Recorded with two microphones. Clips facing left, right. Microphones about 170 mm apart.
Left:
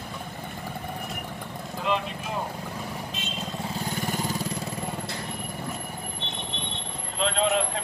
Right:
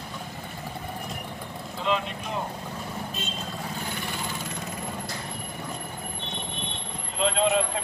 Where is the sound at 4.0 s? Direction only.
40° left (ahead or behind).